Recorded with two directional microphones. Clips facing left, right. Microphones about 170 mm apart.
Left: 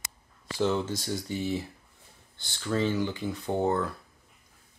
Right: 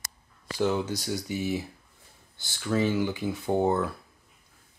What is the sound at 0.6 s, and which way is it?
Speech, 5° right (ahead or behind).